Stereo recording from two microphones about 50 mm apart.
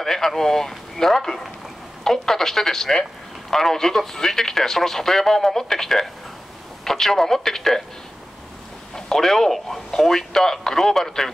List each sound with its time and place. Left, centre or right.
0.0 s a man's voice: centre
8.9 s speech: centre